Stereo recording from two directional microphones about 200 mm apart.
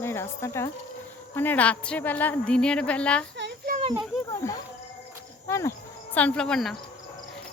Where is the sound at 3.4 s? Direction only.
45° right (ahead or behind).